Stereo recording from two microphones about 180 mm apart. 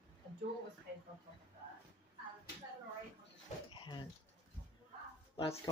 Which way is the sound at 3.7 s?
25° left (ahead or behind).